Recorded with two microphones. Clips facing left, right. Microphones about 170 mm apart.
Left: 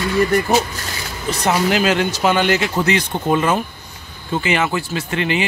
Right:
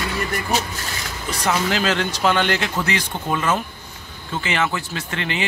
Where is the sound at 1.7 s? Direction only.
15° left (ahead or behind).